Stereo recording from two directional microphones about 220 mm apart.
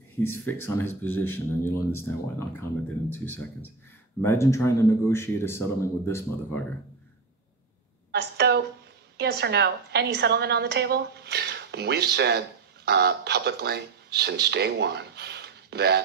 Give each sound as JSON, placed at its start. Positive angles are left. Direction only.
{"t": 0.2, "sound": "speech", "side_deg": 10}
{"t": 8.1, "sound": "a sound", "side_deg": -45}
{"t": 9.1, "sound": "a woman's voice", "side_deg": -50}